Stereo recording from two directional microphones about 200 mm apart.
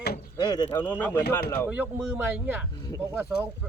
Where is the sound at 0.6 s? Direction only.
10° left (ahead or behind).